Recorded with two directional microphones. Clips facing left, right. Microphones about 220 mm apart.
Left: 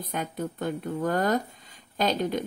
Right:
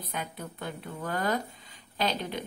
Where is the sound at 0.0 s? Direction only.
50° left (ahead or behind).